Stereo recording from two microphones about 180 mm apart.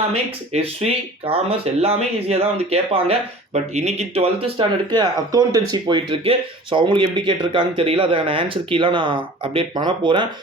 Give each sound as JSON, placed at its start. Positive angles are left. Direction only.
{"t": 0.1, "sound": "speech", "side_deg": -35}